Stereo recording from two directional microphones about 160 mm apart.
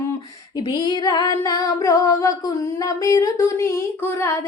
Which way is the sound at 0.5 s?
25° left (ahead or behind).